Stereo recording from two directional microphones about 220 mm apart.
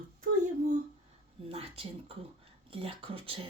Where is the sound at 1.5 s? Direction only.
25° right (ahead or behind).